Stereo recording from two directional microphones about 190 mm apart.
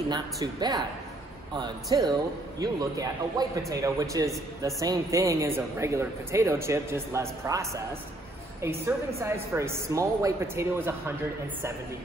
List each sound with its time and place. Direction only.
0.1 s a woman's voice: 20° right (ahead or behind)